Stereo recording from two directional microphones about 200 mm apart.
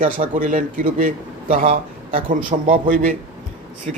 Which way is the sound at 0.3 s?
40° right (ahead or behind).